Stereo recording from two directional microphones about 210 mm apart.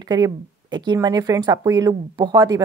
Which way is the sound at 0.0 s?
20° right (ahead or behind).